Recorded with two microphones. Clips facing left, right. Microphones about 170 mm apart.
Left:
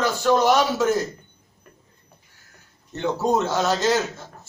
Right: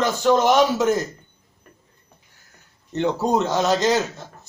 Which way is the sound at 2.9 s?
15° right (ahead or behind).